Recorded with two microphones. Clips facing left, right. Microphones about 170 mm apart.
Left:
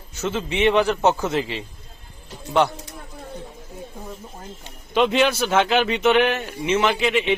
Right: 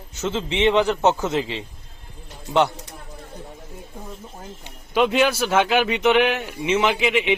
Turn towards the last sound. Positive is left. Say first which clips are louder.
# even
turn(degrees=-15)  # may be behind; listen again after turning